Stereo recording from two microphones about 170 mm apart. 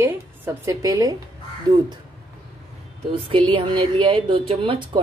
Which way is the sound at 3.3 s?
30° right (ahead or behind).